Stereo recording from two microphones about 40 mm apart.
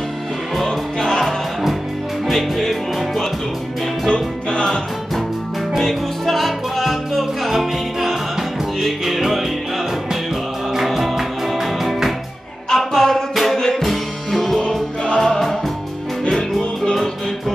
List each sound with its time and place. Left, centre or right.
0.7 s music: centre
1.2 s music: centre
4.1 s music: left
5.8 s music: centre
10.9 s music: centre
12.6 s music: centre
13.3 s music: centre
16.5 s music: centre